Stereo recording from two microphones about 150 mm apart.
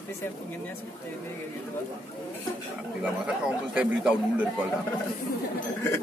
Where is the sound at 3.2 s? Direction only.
5° right (ahead or behind).